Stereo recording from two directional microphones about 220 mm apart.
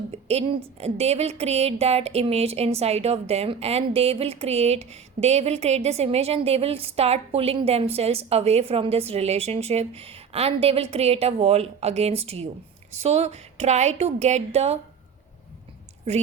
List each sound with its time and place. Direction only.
0.1 s a woman's voice: 30° right (ahead or behind)